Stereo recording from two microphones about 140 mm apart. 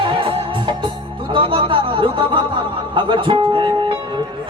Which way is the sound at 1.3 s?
35° right (ahead or behind).